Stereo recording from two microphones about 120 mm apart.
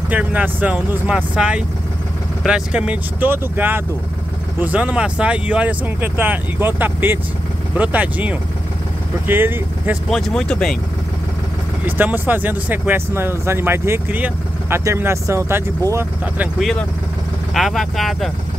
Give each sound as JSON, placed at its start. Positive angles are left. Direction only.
{"t": 0.1, "sound": "speech", "side_deg": -15}
{"t": 10.0, "sound": "speech", "side_deg": 5}
{"t": 11.8, "sound": "speech", "side_deg": -15}
{"t": 16.5, "sound": "speech", "side_deg": 0}